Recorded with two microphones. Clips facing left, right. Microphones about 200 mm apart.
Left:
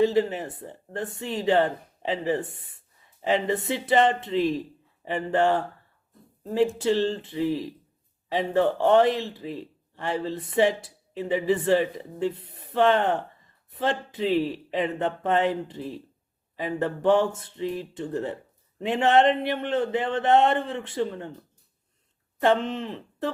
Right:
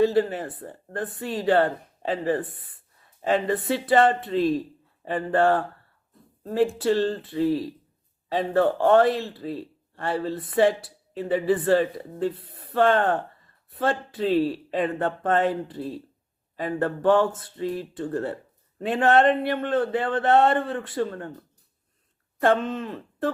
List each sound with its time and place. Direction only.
0.0 s speech: 20° left (ahead or behind)
22.4 s speech: 20° left (ahead or behind)